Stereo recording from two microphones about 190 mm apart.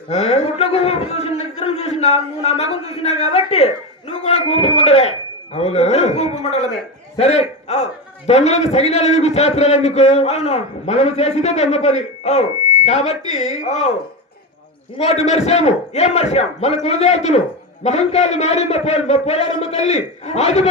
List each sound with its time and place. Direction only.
0.1 s a man's voice: 35° left (ahead or behind)
14.9 s a man's voice: 35° left (ahead or behind)